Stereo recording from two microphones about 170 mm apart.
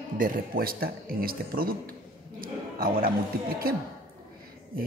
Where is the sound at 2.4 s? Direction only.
60° right (ahead or behind).